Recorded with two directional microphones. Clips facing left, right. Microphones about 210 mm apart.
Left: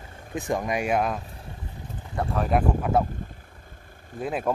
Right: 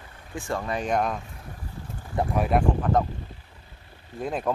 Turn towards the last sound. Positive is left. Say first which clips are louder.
# left 1 dB
turn(degrees=5)  # may be behind; listen again after turning